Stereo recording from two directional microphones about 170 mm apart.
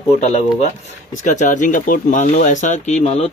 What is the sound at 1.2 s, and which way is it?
Speech, 50° left (ahead or behind).